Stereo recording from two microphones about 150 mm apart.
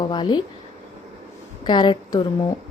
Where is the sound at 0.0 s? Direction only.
30° left (ahead or behind).